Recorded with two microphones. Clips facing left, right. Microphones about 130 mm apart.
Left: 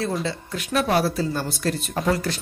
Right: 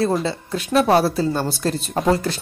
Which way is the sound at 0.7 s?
30° right (ahead or behind).